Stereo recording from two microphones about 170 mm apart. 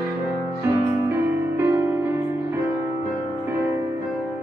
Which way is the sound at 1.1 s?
15° right (ahead or behind).